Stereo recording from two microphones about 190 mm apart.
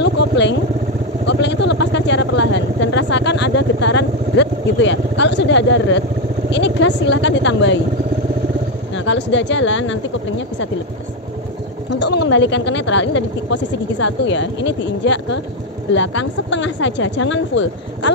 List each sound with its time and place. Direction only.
0.0 s speech: 65° left (ahead or behind)
1.2 s vehicle: 65° left (ahead or behind)
6.5 s speech: 65° left (ahead or behind)
8.9 s speech: 75° left (ahead or behind)
11.9 s speech: 65° left (ahead or behind)